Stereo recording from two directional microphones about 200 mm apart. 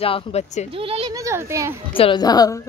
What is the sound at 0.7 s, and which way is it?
Speech, 25° right (ahead or behind).